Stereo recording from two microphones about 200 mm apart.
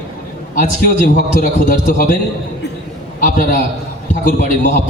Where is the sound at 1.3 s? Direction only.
40° left (ahead or behind).